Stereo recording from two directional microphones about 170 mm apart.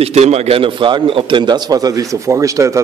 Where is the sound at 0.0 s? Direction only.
40° right (ahead or behind).